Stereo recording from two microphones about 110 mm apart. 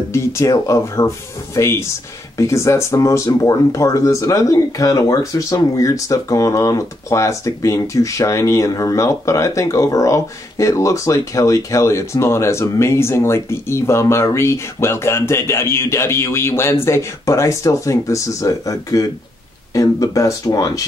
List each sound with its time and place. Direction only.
0.1 s speech: 25° left (ahead or behind)